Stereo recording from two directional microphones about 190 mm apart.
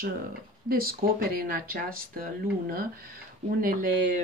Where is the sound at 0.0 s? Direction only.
50° right (ahead or behind).